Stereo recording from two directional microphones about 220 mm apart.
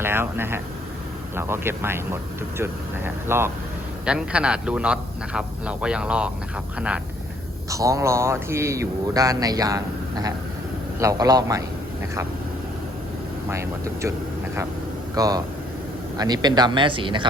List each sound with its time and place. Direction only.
0.0 s a man's voice: 10° right (ahead or behind)
13.5 s speech: 10° right (ahead or behind)
15.1 s speech: 15° right (ahead or behind)